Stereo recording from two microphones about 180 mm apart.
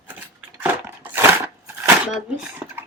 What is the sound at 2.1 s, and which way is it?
Speech, 5° right (ahead or behind).